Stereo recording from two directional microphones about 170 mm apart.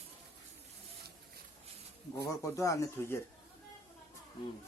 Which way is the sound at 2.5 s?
20° left (ahead or behind).